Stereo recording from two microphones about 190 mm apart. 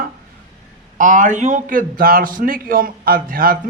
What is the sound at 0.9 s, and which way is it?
A man's voice, 45° right (ahead or behind).